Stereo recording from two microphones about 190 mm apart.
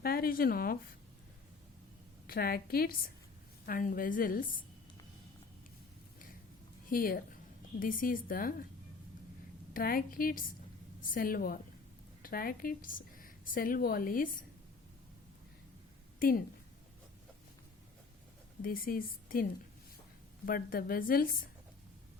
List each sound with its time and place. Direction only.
0.0 s a woman's voice: 50° left (ahead or behind)
2.2 s a woman's voice: 50° left (ahead or behind)
6.9 s a woman's voice: 50° left (ahead or behind)
9.7 s a woman's voice: 50° left (ahead or behind)
18.6 s a woman's voice: 50° left (ahead or behind)